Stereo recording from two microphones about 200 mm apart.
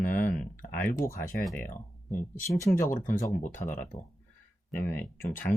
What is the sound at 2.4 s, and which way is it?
Speech, 15° left (ahead or behind).